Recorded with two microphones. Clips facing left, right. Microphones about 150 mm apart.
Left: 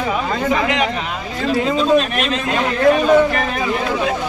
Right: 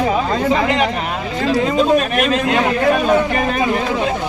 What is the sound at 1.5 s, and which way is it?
Speech, 50° right (ahead or behind).